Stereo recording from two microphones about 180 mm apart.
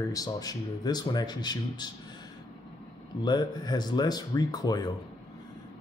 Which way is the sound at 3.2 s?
25° left (ahead or behind).